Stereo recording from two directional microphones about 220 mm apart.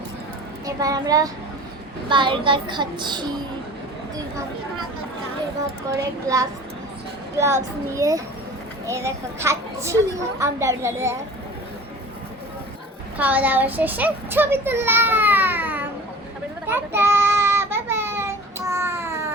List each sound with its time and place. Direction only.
0.6 s a child's voice: 15° right (ahead or behind)
6.0 s a child's voice: 15° right (ahead or behind)
13.1 s a child's voice: 5° right (ahead or behind)
16.6 s child singing: 10° right (ahead or behind)